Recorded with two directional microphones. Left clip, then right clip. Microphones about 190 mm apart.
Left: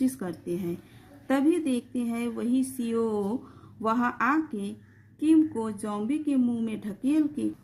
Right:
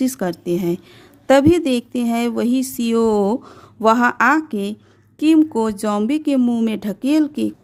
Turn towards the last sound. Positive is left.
turn(degrees=-60)  # may be behind; listen again after turning